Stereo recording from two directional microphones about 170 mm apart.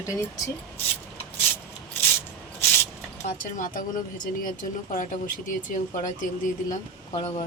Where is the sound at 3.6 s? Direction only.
50° left (ahead or behind).